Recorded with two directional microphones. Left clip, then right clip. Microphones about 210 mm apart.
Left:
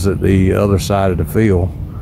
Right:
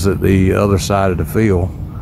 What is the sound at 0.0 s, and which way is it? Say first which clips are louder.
Speech: right 1 dB; 5° right (ahead or behind).